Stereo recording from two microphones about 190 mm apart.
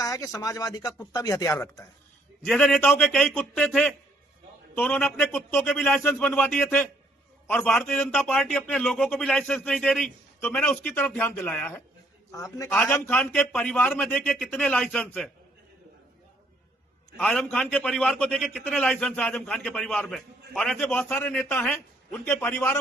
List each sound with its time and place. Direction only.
0.0 s speech: 15° left (ahead or behind)
2.4 s a man's voice: 5° left (ahead or behind)
17.2 s a man's voice: 5° left (ahead or behind)